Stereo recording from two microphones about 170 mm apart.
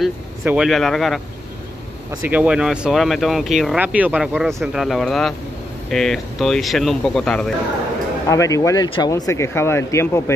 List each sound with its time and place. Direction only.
0.0 s speech: 5° right (ahead or behind)
2.2 s speech: 10° right (ahead or behind)
8.3 s speech: 20° left (ahead or behind)